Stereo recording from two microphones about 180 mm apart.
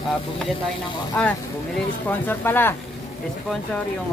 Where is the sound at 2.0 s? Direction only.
10° left (ahead or behind).